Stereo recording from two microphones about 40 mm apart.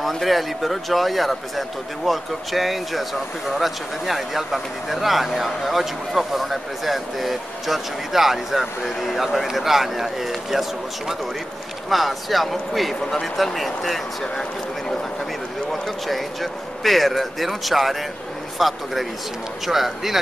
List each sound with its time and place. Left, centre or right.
0.0 s speech: centre
15.7 s a man's voice: centre